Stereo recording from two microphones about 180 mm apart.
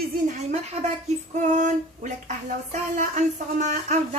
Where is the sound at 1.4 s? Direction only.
40° right (ahead or behind).